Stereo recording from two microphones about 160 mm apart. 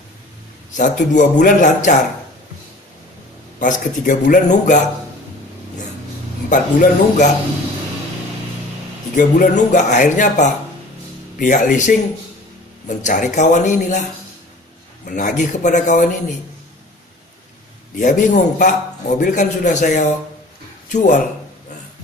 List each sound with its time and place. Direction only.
0.7 s a man's voice: 55° left (ahead or behind)
3.5 s a man's voice: 55° left (ahead or behind)
6.5 s speech: 55° left (ahead or behind)
9.1 s a man's voice: 50° left (ahead or behind)
15.0 s a man's voice: 55° left (ahead or behind)
17.9 s a man's voice: 55° left (ahead or behind)